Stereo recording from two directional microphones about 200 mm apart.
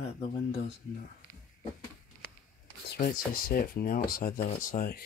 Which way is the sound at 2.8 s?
50° left (ahead or behind).